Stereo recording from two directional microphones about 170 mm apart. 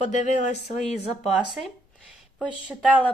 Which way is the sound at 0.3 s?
40° left (ahead or behind).